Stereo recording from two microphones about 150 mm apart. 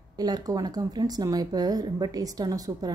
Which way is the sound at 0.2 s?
25° right (ahead or behind).